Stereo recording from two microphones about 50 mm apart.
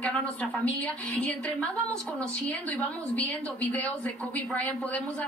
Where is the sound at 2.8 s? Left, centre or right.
Left.